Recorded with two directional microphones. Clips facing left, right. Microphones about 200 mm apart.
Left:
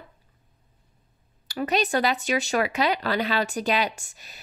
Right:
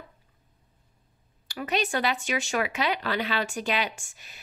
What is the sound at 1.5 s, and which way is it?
Speech, 40° left (ahead or behind).